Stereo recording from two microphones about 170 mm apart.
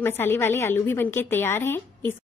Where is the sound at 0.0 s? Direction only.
15° left (ahead or behind).